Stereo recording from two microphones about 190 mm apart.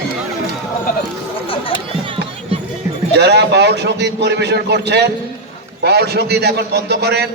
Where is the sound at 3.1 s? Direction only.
60° right (ahead or behind).